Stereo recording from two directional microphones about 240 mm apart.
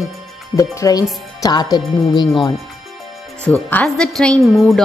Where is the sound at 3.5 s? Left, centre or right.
Centre.